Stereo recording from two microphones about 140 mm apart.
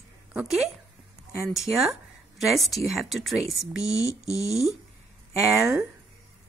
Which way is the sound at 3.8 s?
50° right (ahead or behind).